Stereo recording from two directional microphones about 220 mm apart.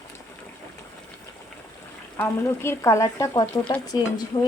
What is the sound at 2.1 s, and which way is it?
Speech, 10° left (ahead or behind).